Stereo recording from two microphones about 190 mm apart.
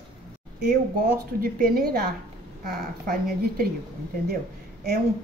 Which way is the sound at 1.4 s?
50° right (ahead or behind).